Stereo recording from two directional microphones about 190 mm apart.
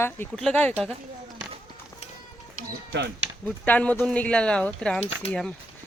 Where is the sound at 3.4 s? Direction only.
10° left (ahead or behind).